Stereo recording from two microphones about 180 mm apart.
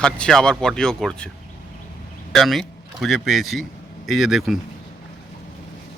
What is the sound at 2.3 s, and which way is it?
Speech, centre (ahead or behind).